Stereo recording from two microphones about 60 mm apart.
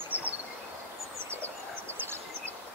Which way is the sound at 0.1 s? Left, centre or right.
Right.